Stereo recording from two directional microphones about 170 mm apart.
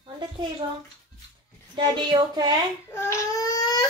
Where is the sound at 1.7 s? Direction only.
30° right (ahead or behind).